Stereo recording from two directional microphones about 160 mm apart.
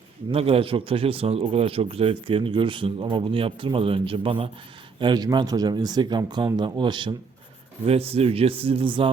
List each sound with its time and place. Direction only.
0.3 s a man's voice: 35° right (ahead or behind)